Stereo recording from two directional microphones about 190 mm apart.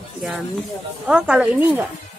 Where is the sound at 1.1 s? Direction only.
5° right (ahead or behind).